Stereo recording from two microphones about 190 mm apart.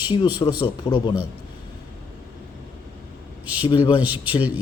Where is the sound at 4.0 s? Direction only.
10° right (ahead or behind).